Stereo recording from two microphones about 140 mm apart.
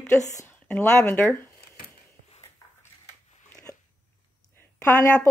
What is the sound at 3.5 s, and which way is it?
Dog, 20° left (ahead or behind).